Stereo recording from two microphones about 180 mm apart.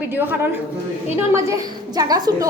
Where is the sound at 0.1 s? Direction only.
10° right (ahead or behind).